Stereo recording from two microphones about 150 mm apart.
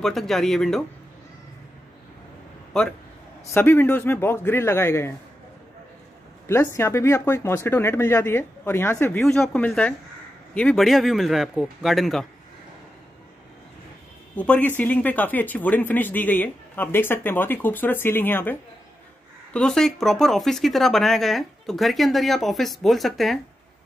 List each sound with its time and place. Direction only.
0.0 s speech: centre (ahead or behind)
2.7 s speech: 5° left (ahead or behind)
3.4 s speech: 15° left (ahead or behind)
6.4 s a man's voice: 15° left (ahead or behind); by 12.3 s centre (ahead or behind)
14.3 s speech: 10° left (ahead or behind)